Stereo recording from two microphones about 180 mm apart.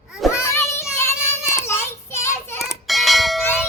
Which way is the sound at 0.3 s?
15° left (ahead or behind).